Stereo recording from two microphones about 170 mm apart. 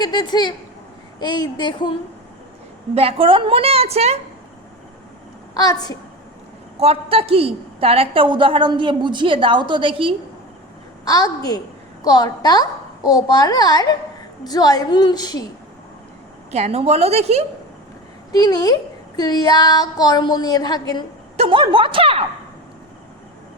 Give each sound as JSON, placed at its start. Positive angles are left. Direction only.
{"t": 0.0, "sound": "a woman's voice", "side_deg": 25}
{"t": 2.9, "sound": "a woman's voice", "side_deg": -35}
{"t": 5.5, "sound": "a woman's voice", "side_deg": 20}
{"t": 6.7, "sound": "a woman's voice", "side_deg": -35}
{"t": 11.0, "sound": "a woman's voice", "side_deg": 20}
{"t": 16.5, "sound": "a woman's voice", "side_deg": -40}
{"t": 18.3, "sound": "a woman's voice", "side_deg": 25}
{"t": 21.3, "sound": "a woman's voice", "side_deg": -30}